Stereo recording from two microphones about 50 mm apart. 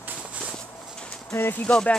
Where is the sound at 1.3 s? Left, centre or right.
Left.